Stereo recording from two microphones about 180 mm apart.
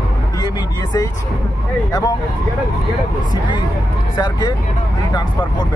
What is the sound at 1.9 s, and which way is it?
Speech, 20° left (ahead or behind).